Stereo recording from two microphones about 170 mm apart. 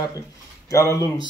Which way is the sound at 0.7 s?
20° left (ahead or behind).